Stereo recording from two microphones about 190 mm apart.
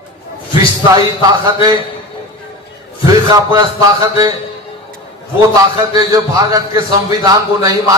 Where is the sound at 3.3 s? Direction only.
20° right (ahead or behind).